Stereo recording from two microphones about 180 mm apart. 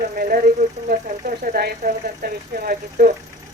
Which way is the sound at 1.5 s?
60° right (ahead or behind).